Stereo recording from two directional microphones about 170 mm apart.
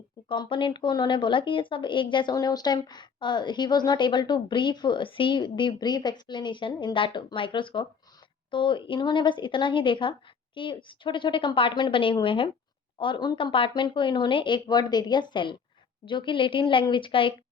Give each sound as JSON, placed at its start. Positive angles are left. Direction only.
{"t": 0.3, "sound": "speech", "side_deg": 30}